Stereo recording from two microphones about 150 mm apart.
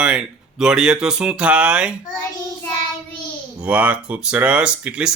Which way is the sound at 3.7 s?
10° right (ahead or behind).